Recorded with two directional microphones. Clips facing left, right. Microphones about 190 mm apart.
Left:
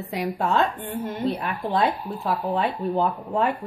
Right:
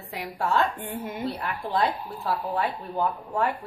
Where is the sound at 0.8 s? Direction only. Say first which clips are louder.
Left 3 dB; 5° right (ahead or behind).